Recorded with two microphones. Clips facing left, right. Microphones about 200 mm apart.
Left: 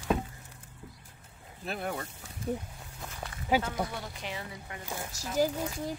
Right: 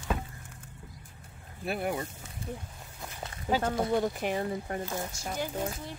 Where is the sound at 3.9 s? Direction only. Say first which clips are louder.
Right 11 dB; 50° right (ahead or behind).